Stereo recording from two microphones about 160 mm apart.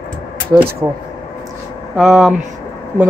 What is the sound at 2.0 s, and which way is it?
Speech, centre (ahead or behind).